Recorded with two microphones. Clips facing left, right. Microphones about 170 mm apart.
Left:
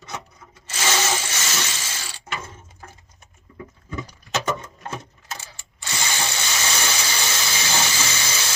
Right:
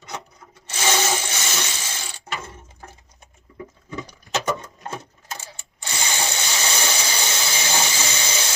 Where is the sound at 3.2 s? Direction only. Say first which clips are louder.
Right 2 dB; 15° right (ahead or behind).